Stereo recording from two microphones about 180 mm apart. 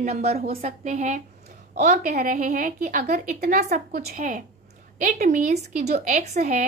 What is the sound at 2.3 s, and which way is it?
Speech, 40° right (ahead or behind).